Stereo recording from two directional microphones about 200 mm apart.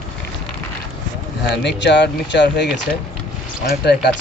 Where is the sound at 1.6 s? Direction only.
60° left (ahead or behind).